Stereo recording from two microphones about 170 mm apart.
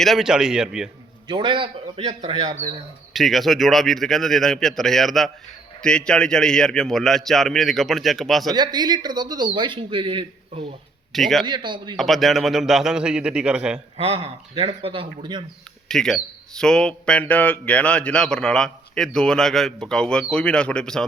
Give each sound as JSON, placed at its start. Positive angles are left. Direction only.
{"t": 0.0, "sound": "speech", "side_deg": 0}
{"t": 1.3, "sound": "speech", "side_deg": -30}
{"t": 3.1, "sound": "speech", "side_deg": 0}
{"t": 8.5, "sound": "speech", "side_deg": -25}
{"t": 11.1, "sound": "speech", "side_deg": 0}
{"t": 11.4, "sound": "speech", "side_deg": -25}
{"t": 11.9, "sound": "speech", "side_deg": 0}
{"t": 13.9, "sound": "speech", "side_deg": -35}
{"t": 15.9, "sound": "speech", "side_deg": 5}